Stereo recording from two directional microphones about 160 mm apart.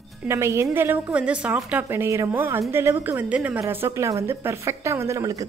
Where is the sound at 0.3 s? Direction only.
15° right (ahead or behind).